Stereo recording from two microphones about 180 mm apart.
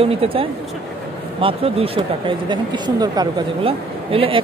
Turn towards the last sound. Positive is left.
turn(degrees=-30)  # may be behind; listen again after turning